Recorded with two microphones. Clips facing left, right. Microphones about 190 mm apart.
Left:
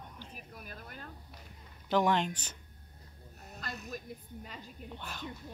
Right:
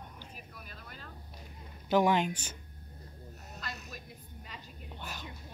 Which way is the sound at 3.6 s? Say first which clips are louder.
Left 4 dB; 50° left (ahead or behind).